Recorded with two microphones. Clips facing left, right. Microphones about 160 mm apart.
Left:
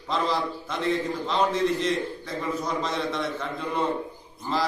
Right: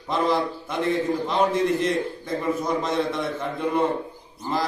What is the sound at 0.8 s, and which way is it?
A man's voice, 55° right (ahead or behind).